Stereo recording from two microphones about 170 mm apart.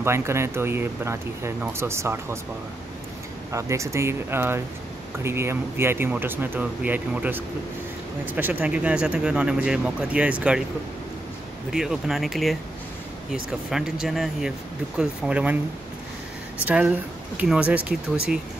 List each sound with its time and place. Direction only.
0.0 s speech: 15° right (ahead or behind)
3.5 s speech: 15° right (ahead or behind)
11.7 s speech: centre (ahead or behind)
16.6 s speech: 10° right (ahead or behind)